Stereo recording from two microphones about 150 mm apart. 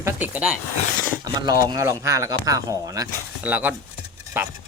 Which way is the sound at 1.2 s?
25° right (ahead or behind).